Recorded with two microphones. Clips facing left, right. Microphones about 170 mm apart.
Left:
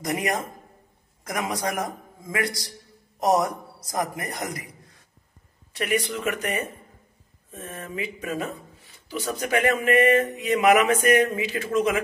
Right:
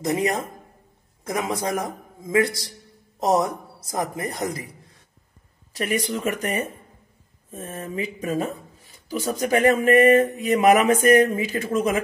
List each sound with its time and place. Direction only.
0.0 s a woman's voice: 25° right (ahead or behind)
5.7 s speech: 40° right (ahead or behind)